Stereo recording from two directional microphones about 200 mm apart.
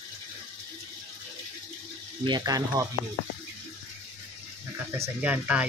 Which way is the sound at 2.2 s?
20° right (ahead or behind).